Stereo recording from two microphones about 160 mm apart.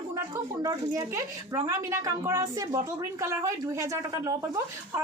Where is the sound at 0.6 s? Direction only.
20° right (ahead or behind).